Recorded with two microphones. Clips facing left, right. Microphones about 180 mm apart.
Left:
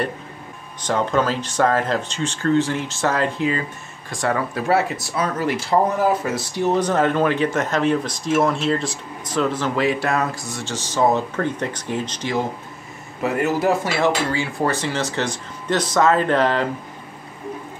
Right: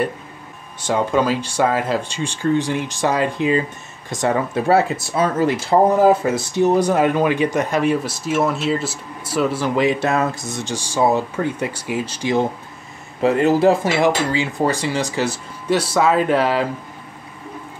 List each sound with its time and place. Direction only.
0.8 s speech: 10° right (ahead or behind)
6.7 s speech: 10° right (ahead or behind)
13.2 s speech: 30° right (ahead or behind); by 16.6 s 10° right (ahead or behind)